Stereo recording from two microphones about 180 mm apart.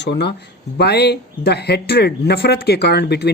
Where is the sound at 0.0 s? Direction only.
70° left (ahead or behind).